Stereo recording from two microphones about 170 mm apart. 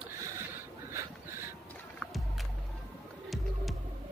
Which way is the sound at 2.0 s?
Centre (ahead or behind).